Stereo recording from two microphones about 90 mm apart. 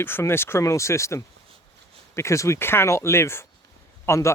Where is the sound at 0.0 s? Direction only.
25° left (ahead or behind).